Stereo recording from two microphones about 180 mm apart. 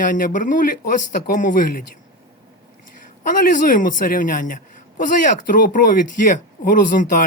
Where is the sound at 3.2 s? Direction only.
50° left (ahead or behind).